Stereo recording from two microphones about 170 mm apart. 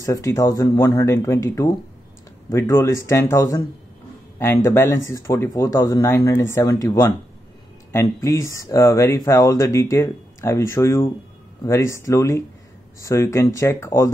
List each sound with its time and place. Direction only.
0.0 s speech: 20° left (ahead or behind)
4.6 s speech: 15° left (ahead or behind)